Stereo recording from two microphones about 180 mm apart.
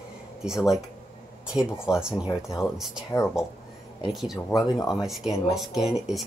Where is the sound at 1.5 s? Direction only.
5° right (ahead or behind).